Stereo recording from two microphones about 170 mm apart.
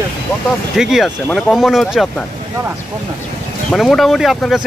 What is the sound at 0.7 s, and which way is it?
Speech, 5° right (ahead or behind).